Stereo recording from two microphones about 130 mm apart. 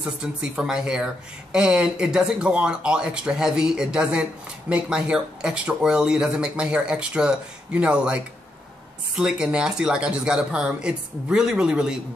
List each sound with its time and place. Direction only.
0.0 s speech: 10° right (ahead or behind)